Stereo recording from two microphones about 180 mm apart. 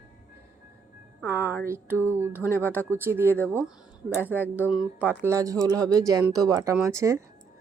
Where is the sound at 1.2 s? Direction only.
10° right (ahead or behind).